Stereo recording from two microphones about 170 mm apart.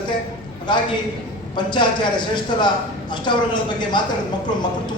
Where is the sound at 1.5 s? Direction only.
25° left (ahead or behind).